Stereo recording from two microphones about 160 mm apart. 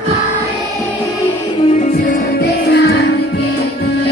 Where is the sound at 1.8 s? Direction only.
65° left (ahead or behind).